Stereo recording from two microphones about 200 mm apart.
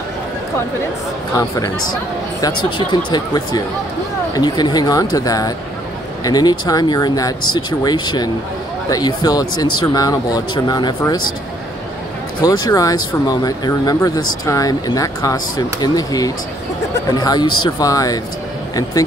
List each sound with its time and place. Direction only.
3.1 s speech: 20° left (ahead or behind)
12.4 s speech: 20° left (ahead or behind)